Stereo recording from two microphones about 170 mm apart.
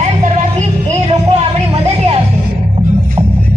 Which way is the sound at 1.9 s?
35° right (ahead or behind).